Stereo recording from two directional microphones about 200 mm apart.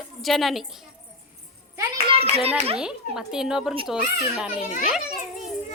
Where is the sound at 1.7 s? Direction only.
25° right (ahead or behind).